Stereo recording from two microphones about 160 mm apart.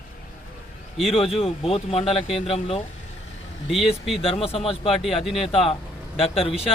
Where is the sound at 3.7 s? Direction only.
Centre (ahead or behind).